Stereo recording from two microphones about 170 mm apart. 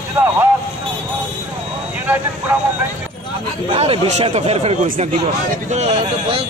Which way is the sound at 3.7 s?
35° right (ahead or behind).